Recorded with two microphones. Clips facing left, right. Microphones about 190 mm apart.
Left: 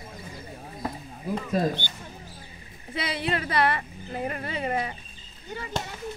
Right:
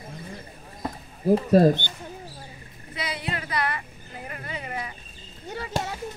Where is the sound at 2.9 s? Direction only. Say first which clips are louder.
Left 3 dB; 30° left (ahead or behind).